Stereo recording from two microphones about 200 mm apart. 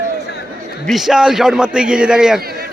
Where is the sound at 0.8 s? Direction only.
Centre (ahead or behind).